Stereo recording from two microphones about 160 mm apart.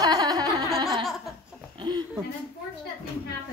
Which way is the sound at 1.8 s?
30° right (ahead or behind).